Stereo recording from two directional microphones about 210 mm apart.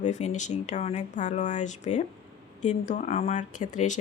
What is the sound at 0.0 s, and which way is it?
A woman's voice, 35° left (ahead or behind).